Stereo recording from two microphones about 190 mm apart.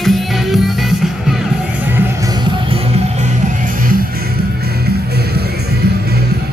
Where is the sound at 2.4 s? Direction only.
30° right (ahead or behind).